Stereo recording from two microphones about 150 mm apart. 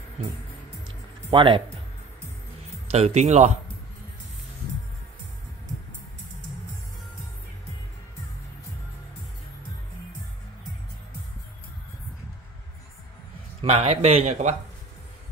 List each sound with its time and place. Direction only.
1.3 s speech: 35° right (ahead or behind)
2.9 s speech: 45° right (ahead or behind)
13.6 s speech: 40° right (ahead or behind)